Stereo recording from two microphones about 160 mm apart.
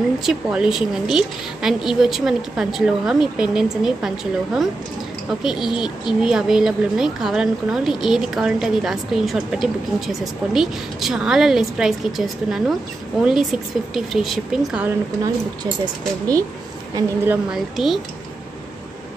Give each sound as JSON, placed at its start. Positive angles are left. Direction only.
{"t": 0.2, "sound": "speech", "side_deg": -5}
{"t": 15.6, "sound": "speech", "side_deg": -25}
{"t": 16.9, "sound": "a woman's voice", "side_deg": -15}
{"t": 17.7, "sound": "speech", "side_deg": 0}